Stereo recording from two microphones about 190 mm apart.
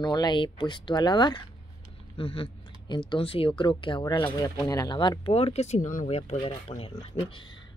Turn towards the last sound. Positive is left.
turn(degrees=30)  # may be behind; listen again after turning